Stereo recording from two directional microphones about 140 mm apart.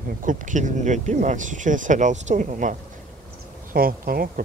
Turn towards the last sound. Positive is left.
turn(degrees=-90)